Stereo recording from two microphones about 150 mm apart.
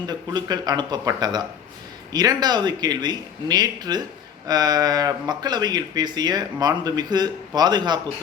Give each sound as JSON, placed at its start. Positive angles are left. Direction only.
{"t": 0.1, "sound": "speech", "side_deg": -30}